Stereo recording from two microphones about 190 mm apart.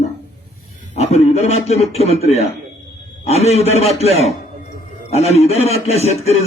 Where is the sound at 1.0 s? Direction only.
35° left (ahead or behind).